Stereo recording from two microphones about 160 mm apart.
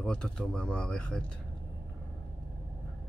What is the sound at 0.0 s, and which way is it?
Speech, 5° left (ahead or behind).